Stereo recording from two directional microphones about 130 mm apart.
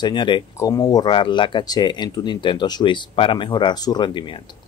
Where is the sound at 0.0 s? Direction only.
35° left (ahead or behind).